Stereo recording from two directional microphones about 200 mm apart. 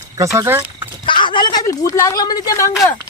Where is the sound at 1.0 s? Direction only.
25° left (ahead or behind).